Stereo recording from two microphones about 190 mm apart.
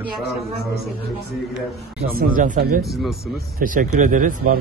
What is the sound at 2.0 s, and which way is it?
Speech, 50° right (ahead or behind).